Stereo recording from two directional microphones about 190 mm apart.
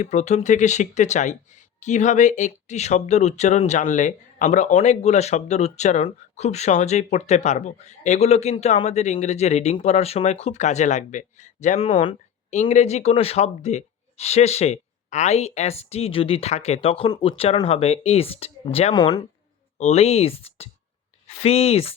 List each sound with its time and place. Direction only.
0.0 s speech: 40° left (ahead or behind)